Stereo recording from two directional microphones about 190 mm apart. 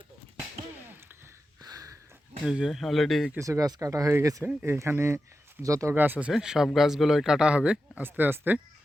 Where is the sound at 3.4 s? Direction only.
20° right (ahead or behind).